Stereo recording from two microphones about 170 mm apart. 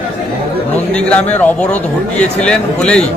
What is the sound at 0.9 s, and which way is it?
A man's voice, 5° left (ahead or behind).